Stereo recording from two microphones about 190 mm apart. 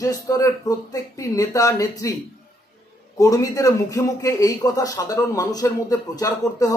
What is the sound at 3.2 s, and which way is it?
A man's voice, 20° left (ahead or behind).